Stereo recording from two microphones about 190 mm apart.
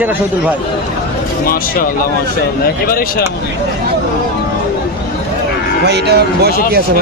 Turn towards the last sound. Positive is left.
turn(degrees=-55)  # may be behind; listen again after turning